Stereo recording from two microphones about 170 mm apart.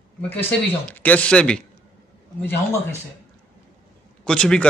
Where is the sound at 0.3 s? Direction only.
10° left (ahead or behind).